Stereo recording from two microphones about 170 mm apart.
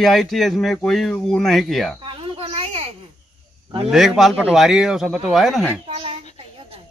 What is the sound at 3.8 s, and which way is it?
Speech, centre (ahead or behind).